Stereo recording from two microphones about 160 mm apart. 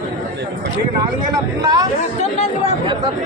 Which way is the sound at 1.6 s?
25° right (ahead or behind).